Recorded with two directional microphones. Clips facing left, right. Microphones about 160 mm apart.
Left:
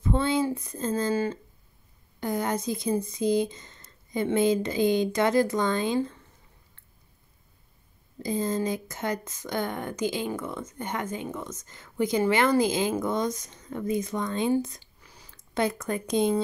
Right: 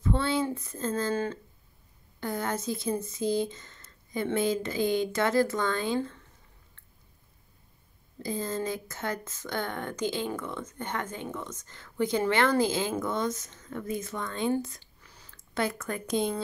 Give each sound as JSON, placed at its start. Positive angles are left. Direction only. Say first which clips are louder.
{"t": 0.0, "sound": "speech", "louder": "left 3 dB", "side_deg": 15}
{"t": 8.2, "sound": "speech", "louder": "left 4 dB", "side_deg": 15}